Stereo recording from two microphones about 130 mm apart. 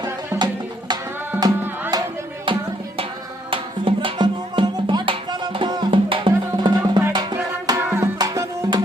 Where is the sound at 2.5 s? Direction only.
40° right (ahead or behind).